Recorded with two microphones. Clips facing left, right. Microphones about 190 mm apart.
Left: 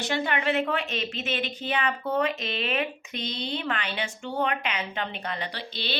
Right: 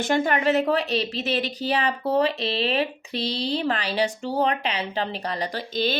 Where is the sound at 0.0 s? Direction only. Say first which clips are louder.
Right 6 dB; 45° right (ahead or behind).